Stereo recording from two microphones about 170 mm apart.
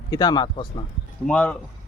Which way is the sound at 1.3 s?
5° left (ahead or behind).